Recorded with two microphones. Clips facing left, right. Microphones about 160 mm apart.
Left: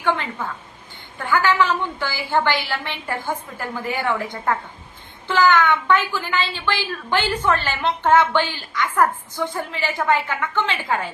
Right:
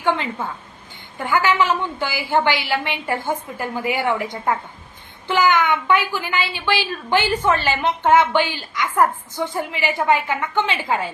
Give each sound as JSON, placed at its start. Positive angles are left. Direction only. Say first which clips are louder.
{"t": 0.0, "sound": "a woman's voice", "louder": "right 1 dB", "side_deg": -15}